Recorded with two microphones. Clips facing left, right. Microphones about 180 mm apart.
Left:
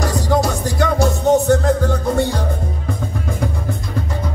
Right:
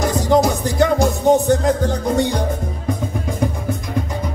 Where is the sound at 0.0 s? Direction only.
20° right (ahead or behind).